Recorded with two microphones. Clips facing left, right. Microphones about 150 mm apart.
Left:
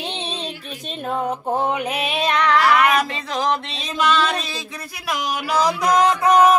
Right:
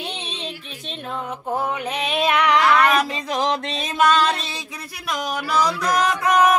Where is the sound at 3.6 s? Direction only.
50° right (ahead or behind).